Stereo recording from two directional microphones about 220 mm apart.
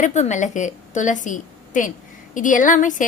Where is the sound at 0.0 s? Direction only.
30° left (ahead or behind).